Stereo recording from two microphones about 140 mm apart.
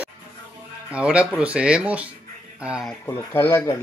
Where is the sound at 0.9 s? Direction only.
10° right (ahead or behind).